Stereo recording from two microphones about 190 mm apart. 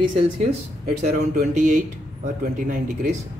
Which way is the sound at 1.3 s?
40° right (ahead or behind).